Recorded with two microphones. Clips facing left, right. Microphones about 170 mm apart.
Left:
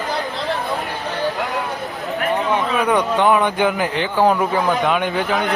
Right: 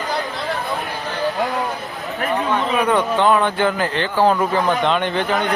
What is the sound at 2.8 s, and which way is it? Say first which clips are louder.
Speech: even; 15° left (ahead or behind).